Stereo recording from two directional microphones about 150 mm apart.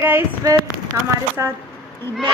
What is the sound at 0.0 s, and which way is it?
Speech, 20° right (ahead or behind).